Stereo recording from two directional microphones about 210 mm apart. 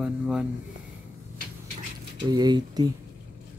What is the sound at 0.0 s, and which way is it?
Speech, 5° right (ahead or behind).